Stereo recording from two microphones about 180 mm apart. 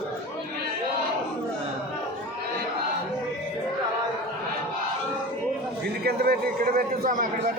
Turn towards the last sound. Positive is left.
turn(degrees=-50)  # may be behind; listen again after turning